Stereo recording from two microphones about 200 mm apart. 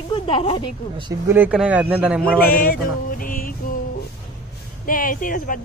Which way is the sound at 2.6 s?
45° left (ahead or behind).